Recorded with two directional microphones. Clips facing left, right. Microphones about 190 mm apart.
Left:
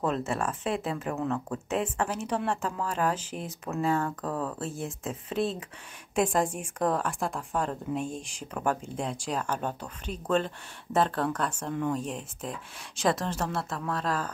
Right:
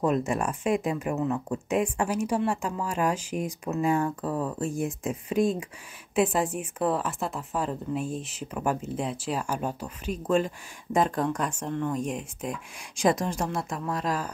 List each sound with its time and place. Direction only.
0.0 s a woman's voice: 15° right (ahead or behind)